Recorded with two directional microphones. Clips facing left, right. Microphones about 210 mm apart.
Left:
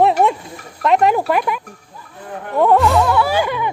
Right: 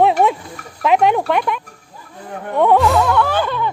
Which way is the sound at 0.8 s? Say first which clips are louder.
Even; centre (ahead or behind).